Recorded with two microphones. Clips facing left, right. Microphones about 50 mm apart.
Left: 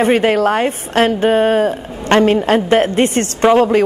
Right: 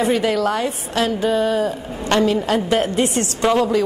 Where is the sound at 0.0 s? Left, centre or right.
Left.